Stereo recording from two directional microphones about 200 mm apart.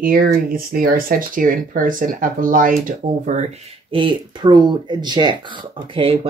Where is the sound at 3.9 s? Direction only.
25° right (ahead or behind).